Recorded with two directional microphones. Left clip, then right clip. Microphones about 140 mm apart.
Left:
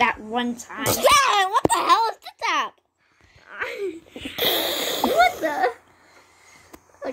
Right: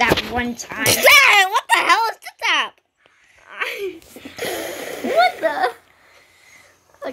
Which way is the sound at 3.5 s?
10° right (ahead or behind).